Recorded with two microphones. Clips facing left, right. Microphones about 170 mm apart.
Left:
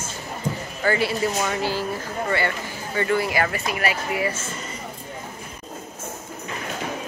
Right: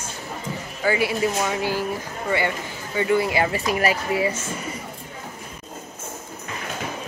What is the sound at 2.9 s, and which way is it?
Speech, 15° right (ahead or behind).